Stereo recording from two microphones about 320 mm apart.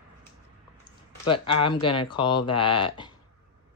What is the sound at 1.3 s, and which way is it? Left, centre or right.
Speech, centre.